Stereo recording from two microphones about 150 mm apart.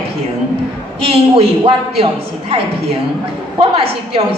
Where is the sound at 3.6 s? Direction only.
35° right (ahead or behind).